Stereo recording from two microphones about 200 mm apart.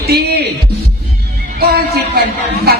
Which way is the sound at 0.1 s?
50° right (ahead or behind).